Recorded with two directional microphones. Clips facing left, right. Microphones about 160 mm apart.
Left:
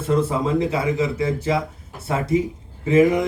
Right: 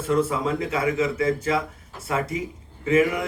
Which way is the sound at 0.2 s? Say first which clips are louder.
Left 3 dB; 30° left (ahead or behind).